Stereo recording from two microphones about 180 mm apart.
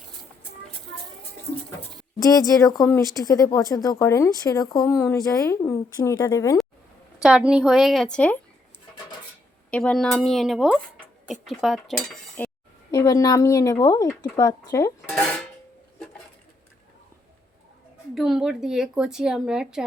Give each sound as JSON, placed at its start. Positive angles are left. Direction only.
{"t": 2.1, "sound": "speech", "side_deg": 20}
{"t": 7.2, "sound": "speech", "side_deg": -5}
{"t": 9.6, "sound": "speech", "side_deg": 5}
{"t": 12.4, "sound": "a sound", "side_deg": 10}
{"t": 12.9, "sound": "speech", "side_deg": 20}
{"t": 15.1, "sound": "music", "side_deg": 5}
{"t": 18.1, "sound": "speech", "side_deg": 0}